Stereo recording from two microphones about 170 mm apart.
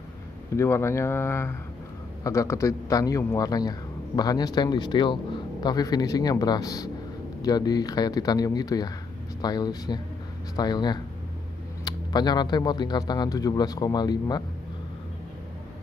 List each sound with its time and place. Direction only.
0.6 s a man's voice: 15° left (ahead or behind)